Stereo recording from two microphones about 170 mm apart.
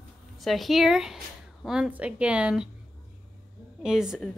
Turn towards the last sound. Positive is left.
turn(degrees=0)  # may be behind; listen again after turning